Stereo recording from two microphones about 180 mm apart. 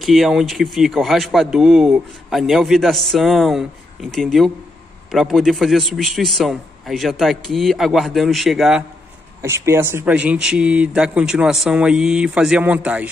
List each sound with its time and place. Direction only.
0.0 s speech: centre (ahead or behind)
9.4 s speech: 15° right (ahead or behind)